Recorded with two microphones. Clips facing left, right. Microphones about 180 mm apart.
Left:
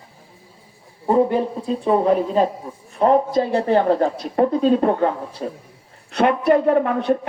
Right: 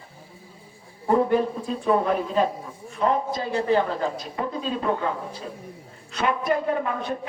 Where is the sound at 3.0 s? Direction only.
45° left (ahead or behind).